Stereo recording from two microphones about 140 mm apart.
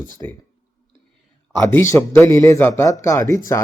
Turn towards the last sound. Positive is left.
turn(degrees=20)  # may be behind; listen again after turning